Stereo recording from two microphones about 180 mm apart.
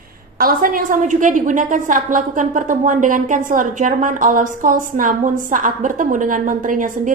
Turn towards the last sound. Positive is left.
turn(degrees=-45)  # may be behind; listen again after turning